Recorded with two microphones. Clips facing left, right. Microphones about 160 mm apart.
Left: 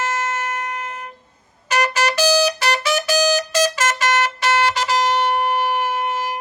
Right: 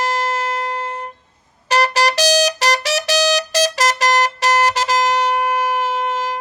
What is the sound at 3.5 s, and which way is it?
Music, 35° right (ahead or behind).